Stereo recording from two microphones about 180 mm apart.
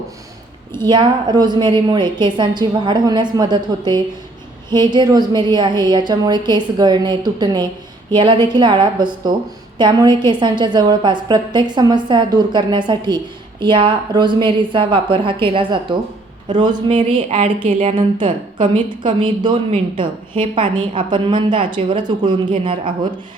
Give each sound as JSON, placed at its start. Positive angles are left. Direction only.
{"t": 0.8, "sound": "a woman's voice", "side_deg": -25}